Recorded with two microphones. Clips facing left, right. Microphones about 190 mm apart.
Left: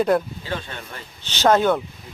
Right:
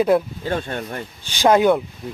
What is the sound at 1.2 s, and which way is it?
Speech, 10° right (ahead or behind).